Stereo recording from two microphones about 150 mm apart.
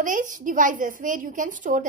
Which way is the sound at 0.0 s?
60° right (ahead or behind).